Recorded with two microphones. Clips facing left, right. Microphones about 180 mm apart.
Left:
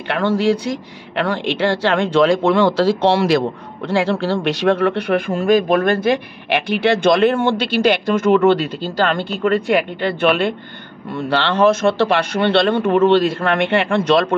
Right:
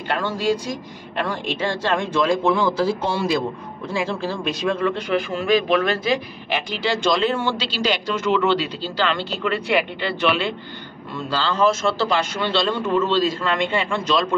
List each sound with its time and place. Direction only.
0.1 s speech: 65° left (ahead or behind)
5.3 s speech: 45° left (ahead or behind)
11.1 s a man's voice: 65° left (ahead or behind)